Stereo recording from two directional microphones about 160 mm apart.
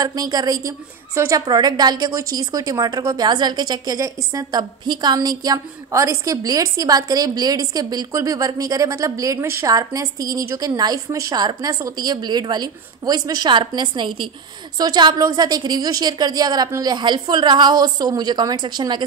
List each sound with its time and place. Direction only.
0.0 s a woman's voice: 25° right (ahead or behind)